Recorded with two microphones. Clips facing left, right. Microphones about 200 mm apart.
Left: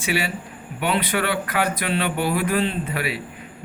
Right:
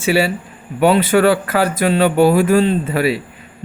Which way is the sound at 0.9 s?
40° right (ahead or behind).